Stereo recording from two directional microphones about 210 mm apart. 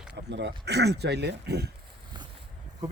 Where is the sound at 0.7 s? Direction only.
50° right (ahead or behind).